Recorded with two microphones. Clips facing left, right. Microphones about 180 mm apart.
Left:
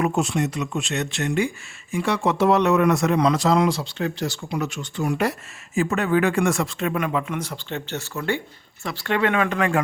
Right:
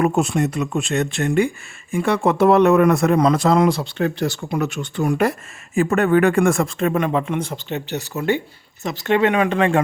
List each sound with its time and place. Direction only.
0.0 s a man's voice: 55° right (ahead or behind); by 9.8 s 25° right (ahead or behind)